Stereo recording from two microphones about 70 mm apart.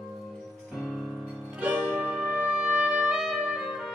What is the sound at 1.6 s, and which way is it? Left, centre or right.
Music, right.